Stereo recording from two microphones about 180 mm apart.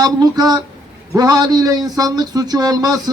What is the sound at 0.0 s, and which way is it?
Speech, 20° right (ahead or behind).